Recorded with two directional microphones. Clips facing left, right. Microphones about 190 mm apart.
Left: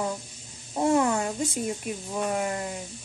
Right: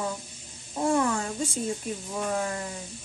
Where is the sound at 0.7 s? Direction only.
25° left (ahead or behind).